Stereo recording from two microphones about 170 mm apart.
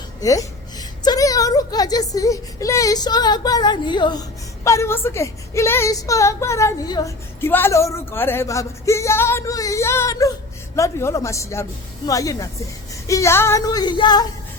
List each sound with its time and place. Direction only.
0.2 s speech: 20° left (ahead or behind)
4.6 s a woman's voice: 15° left (ahead or behind)